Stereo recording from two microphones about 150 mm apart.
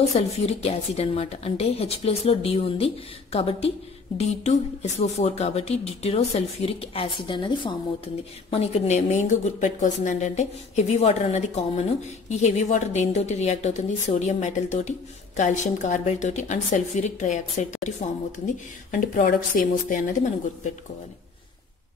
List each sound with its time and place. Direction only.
0.1 s a woman's voice: 45° left (ahead or behind)
8.5 s a woman's voice: 45° left (ahead or behind)
18.9 s speech: 60° left (ahead or behind)